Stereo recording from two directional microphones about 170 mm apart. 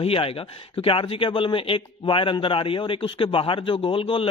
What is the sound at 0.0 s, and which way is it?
Speech, 35° left (ahead or behind).